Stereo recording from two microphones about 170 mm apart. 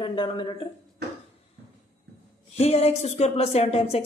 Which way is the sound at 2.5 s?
40° left (ahead or behind).